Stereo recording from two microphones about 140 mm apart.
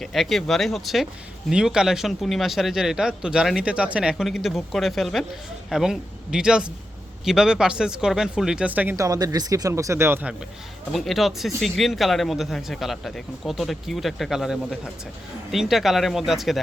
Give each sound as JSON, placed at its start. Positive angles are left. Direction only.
{"t": 0.0, "sound": "speech", "side_deg": 0}
{"t": 9.0, "sound": "speech", "side_deg": -25}
{"t": 10.9, "sound": "speech", "side_deg": 0}